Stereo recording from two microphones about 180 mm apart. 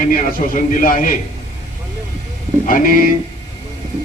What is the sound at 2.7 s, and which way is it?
Speech, 50° left (ahead or behind).